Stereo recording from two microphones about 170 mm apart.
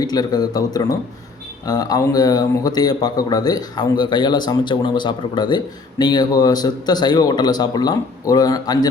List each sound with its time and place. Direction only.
0.0 s speech: 25° left (ahead or behind)